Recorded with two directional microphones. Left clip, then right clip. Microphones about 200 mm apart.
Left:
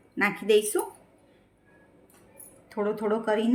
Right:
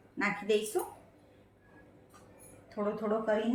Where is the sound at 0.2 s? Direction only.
40° left (ahead or behind).